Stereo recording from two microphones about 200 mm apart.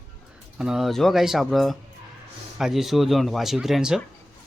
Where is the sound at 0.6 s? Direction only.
Centre (ahead or behind).